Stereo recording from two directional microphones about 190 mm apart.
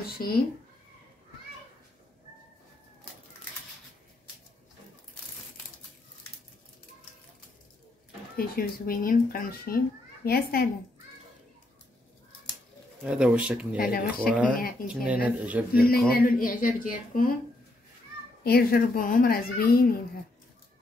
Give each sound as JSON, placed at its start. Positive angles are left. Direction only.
{"t": 8.4, "sound": "a child's voice", "side_deg": 50}
{"t": 13.0, "sound": "speech", "side_deg": -5}
{"t": 13.7, "sound": "a child's voice", "side_deg": 50}
{"t": 14.9, "sound": "speech", "side_deg": -5}
{"t": 16.1, "sound": "a child's voice", "side_deg": 50}
{"t": 18.4, "sound": "a child's voice", "side_deg": 55}